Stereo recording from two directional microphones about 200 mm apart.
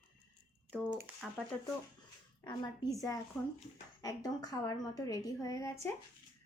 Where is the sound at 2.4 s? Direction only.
20° left (ahead or behind).